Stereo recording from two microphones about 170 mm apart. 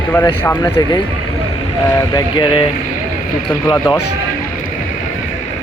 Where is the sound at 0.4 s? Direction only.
20° left (ahead or behind).